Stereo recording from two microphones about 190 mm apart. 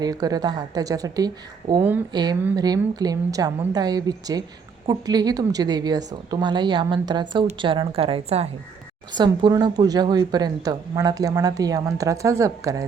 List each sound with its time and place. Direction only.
0.0 s speech: 20° right (ahead or behind)